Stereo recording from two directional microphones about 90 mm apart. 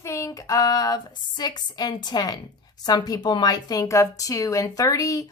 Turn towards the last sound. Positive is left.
turn(degrees=40)  # may be behind; listen again after turning